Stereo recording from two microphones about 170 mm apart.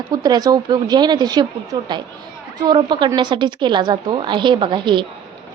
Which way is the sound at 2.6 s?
25° right (ahead or behind).